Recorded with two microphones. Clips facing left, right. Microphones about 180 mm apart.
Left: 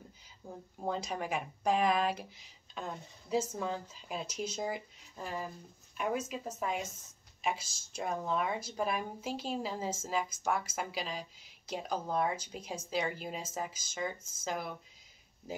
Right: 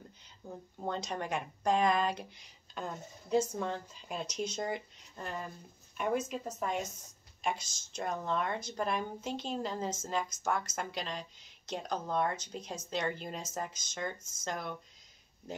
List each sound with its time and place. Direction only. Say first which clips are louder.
0.4 s a woman's voice: left 1 dB; 10° left (ahead or behind)